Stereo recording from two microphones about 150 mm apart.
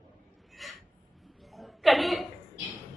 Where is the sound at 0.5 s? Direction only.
Centre (ahead or behind).